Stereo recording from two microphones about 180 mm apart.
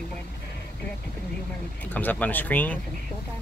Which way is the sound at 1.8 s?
10° left (ahead or behind).